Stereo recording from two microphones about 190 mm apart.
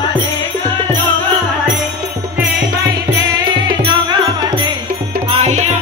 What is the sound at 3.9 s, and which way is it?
Music, 25° right (ahead or behind).